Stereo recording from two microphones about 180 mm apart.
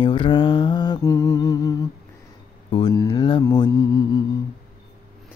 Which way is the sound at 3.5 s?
20° left (ahead or behind).